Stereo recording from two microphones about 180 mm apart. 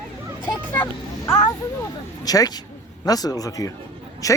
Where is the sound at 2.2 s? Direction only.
20° left (ahead or behind).